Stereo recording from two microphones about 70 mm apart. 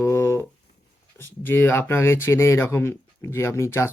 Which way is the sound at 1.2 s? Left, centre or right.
Left.